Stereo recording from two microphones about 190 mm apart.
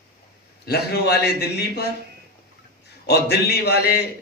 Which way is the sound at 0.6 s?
60° left (ahead or behind).